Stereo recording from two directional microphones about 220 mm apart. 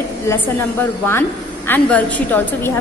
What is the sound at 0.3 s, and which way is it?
A woman's voice, 10° left (ahead or behind).